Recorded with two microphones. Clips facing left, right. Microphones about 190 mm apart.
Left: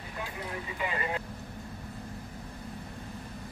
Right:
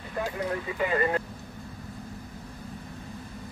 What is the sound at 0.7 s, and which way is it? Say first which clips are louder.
Speech: right 7 dB; 50° right (ahead or behind).